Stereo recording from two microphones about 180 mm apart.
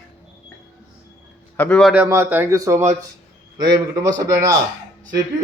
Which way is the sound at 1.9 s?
10° right (ahead or behind).